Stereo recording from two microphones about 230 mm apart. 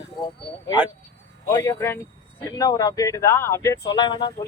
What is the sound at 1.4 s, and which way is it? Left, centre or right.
Speech, centre.